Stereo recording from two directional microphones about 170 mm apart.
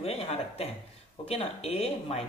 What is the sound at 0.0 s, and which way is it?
Speech, 35° left (ahead or behind).